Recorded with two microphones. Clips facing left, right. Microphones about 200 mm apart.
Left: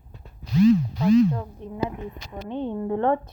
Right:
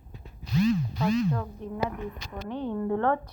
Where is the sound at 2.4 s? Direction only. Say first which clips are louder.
Left 2 dB; 20° left (ahead or behind).